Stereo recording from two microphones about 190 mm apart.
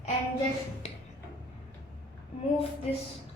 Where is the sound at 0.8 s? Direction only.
30° left (ahead or behind).